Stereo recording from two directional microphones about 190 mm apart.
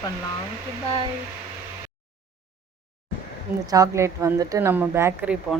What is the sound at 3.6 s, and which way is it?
A woman's voice, 20° right (ahead or behind).